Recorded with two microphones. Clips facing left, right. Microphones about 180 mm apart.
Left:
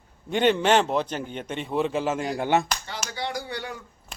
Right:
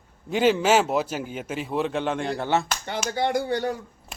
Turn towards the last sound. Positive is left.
turn(degrees=-45)  # may be behind; listen again after turning